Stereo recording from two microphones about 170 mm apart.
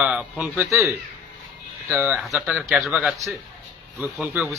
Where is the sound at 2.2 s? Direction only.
Centre (ahead or behind).